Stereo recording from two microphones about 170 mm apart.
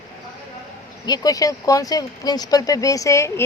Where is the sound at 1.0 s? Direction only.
25° left (ahead or behind).